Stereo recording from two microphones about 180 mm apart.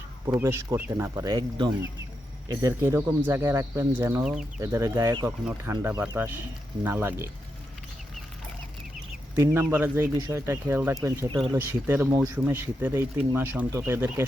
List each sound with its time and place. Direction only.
0.3 s speech: 15° right (ahead or behind)
4.6 s speech: 15° right (ahead or behind)
9.3 s speech: 15° right (ahead or behind)